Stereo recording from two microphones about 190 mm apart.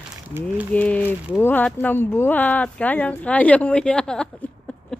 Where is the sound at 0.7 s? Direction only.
10° left (ahead or behind).